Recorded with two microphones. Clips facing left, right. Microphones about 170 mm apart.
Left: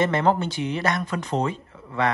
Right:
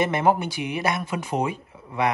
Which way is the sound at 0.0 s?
10° right (ahead or behind).